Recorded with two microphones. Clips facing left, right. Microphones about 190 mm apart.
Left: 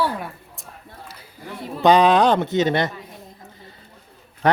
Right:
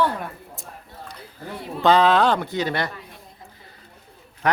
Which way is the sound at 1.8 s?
15° left (ahead or behind).